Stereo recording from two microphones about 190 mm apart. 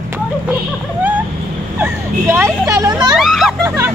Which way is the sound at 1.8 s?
15° right (ahead or behind).